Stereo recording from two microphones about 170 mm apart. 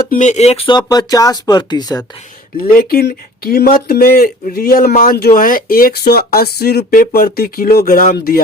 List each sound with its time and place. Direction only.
0.1 s speech: 45° left (ahead or behind)
0.9 s speech: 20° left (ahead or behind)
2.7 s speech: 65° left (ahead or behind)